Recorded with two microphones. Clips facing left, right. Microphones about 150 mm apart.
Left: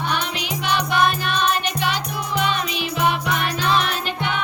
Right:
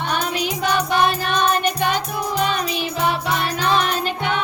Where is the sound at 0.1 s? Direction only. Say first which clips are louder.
Right 3 dB; 40° right (ahead or behind).